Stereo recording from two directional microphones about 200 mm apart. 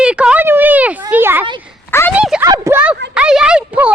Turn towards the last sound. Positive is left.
turn(degrees=-5)  # may be behind; listen again after turning